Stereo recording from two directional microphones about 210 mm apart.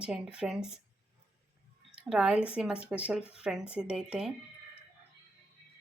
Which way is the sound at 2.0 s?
5° right (ahead or behind).